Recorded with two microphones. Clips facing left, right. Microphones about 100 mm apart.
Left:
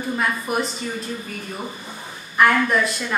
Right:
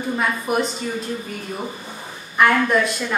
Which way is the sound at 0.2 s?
Centre (ahead or behind).